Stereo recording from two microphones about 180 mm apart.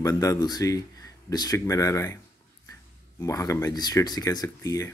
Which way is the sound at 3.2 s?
15° left (ahead or behind).